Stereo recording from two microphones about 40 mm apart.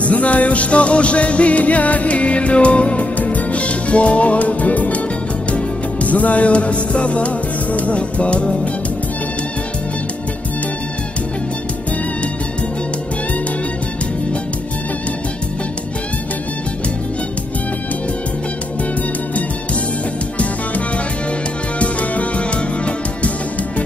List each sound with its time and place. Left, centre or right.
0.0 s music: left
21.7 s music: left